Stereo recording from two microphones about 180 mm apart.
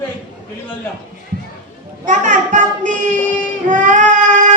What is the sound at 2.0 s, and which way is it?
Speech, 45° right (ahead or behind).